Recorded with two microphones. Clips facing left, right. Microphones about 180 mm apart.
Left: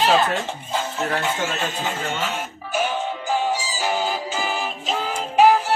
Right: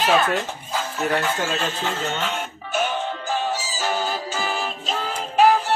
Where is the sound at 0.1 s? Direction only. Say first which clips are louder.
Even; 25° left (ahead or behind).